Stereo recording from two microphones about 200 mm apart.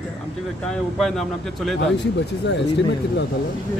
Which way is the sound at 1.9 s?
60° left (ahead or behind).